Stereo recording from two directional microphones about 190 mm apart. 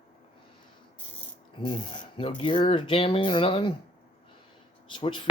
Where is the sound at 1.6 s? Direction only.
25° left (ahead or behind).